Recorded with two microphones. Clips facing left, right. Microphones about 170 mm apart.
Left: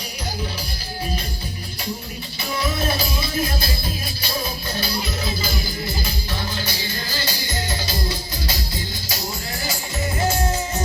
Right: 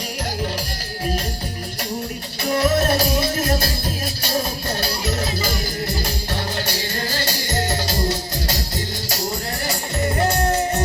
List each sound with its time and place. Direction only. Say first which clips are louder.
2.5 s music: right 7 dB; 45° right (ahead or behind)
2.9 s music: right 5 dB; 75° right (ahead or behind)
9.6 s music: right 4 dB; 65° right (ahead or behind)